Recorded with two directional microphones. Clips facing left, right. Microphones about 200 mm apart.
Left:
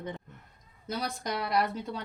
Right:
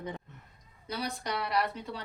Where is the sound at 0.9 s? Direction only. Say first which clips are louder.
Left 2 dB; 45° left (ahead or behind).